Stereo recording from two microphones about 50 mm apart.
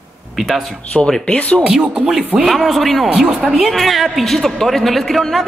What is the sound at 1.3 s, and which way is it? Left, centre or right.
Speech, left.